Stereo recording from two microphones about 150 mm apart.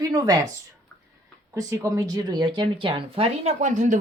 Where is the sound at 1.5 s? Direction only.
25° right (ahead or behind).